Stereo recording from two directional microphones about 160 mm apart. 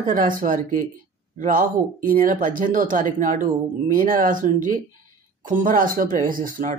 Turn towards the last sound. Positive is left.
turn(degrees=-55)  # may be behind; listen again after turning